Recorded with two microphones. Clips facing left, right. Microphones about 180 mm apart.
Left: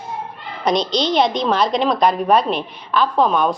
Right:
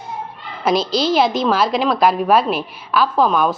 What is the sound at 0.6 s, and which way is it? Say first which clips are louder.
A woman's voice: right 1 dB; 5° right (ahead or behind).